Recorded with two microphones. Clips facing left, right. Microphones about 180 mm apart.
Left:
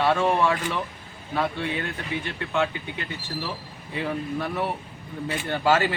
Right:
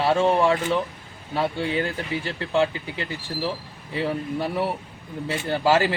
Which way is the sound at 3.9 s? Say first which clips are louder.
Right 2 dB; 30° right (ahead or behind).